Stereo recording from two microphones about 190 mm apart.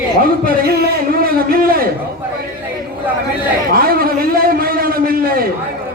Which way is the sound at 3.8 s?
50° right (ahead or behind).